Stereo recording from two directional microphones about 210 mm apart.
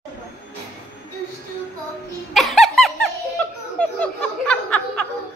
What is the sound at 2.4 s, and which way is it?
Laughter, centre (ahead or behind).